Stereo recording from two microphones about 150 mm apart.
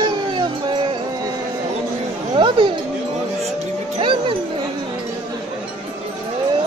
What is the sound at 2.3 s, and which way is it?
Speech, 35° right (ahead or behind).